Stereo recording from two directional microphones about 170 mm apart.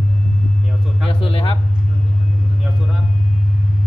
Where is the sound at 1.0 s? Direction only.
35° left (ahead or behind).